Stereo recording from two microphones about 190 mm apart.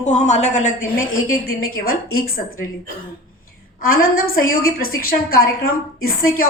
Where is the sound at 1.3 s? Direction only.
50° left (ahead or behind).